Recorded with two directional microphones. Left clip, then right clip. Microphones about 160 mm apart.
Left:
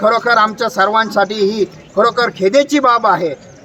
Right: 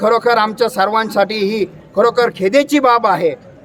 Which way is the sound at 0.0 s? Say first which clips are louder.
Left 1 dB; 25° right (ahead or behind).